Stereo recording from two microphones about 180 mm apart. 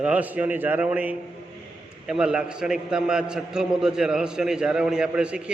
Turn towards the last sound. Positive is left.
turn(degrees=-5)  # may be behind; listen again after turning